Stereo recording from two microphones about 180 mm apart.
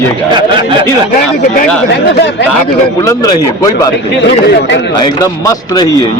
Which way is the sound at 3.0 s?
20° left (ahead or behind).